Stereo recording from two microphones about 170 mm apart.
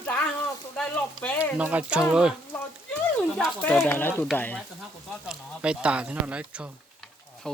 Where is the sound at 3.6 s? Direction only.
10° left (ahead or behind).